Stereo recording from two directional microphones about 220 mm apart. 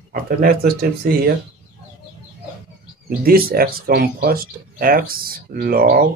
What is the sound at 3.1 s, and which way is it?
Speech, 40° right (ahead or behind).